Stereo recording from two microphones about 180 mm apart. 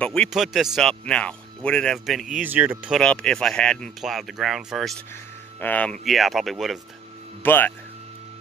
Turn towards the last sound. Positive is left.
turn(degrees=10)  # may be behind; listen again after turning